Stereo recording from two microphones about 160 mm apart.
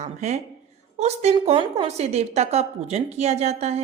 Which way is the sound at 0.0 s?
45° right (ahead or behind).